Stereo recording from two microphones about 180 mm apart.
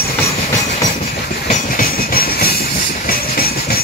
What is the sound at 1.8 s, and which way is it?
Train, 55° left (ahead or behind).